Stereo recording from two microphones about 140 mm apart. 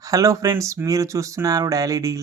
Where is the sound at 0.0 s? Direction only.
25° right (ahead or behind).